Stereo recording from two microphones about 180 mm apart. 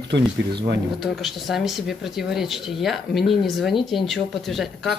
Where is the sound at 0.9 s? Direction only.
Centre (ahead or behind).